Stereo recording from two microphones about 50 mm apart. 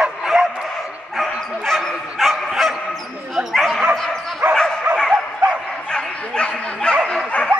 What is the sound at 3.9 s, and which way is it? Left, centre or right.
Dog, centre.